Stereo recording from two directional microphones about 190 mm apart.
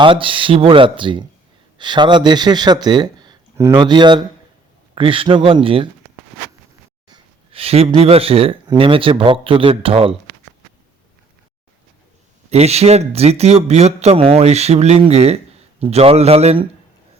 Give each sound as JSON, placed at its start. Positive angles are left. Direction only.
{"t": 0.0, "sound": "speech", "side_deg": -25}
{"t": 7.1, "sound": "speech", "side_deg": -30}
{"t": 12.5, "sound": "a man's voice", "side_deg": -35}